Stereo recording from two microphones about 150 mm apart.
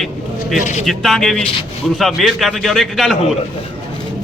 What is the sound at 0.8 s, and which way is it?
A man's voice, centre (ahead or behind).